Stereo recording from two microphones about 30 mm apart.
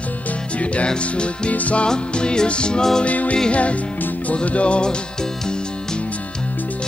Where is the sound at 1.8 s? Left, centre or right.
Left.